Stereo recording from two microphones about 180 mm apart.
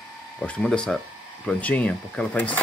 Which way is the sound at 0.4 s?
5° left (ahead or behind).